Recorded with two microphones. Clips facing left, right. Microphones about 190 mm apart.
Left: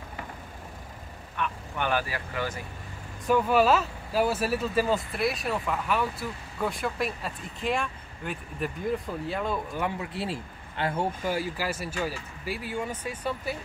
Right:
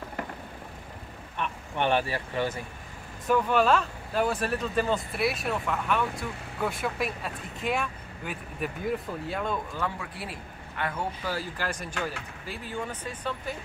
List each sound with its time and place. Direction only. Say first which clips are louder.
1.8 s speech: right 3 dB; 30° right (ahead or behind)
3.3 s speech: left 1 dB; 5° left (ahead or behind)
9.8 s speech: left 3 dB; 20° left (ahead or behind)
11.3 s speech: left 3 dB; 5° left (ahead or behind)